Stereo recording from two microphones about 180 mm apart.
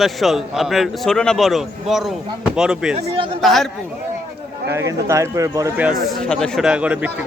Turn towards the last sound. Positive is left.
turn(degrees=-5)  # may be behind; listen again after turning